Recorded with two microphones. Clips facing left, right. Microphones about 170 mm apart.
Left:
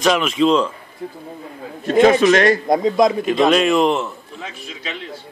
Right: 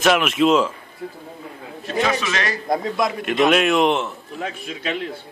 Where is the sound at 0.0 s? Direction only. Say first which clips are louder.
Left 1 dB; 5° right (ahead or behind).